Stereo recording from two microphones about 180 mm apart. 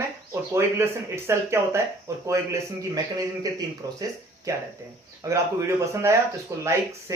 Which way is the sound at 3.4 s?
20° right (ahead or behind).